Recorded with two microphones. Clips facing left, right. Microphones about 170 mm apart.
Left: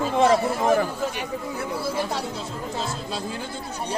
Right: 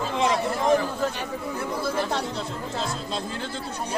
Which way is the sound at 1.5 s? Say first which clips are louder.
Right 1 dB; 10° left (ahead or behind).